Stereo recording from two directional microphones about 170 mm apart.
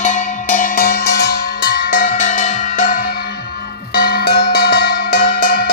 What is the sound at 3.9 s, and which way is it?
Cowbell, 65° left (ahead or behind).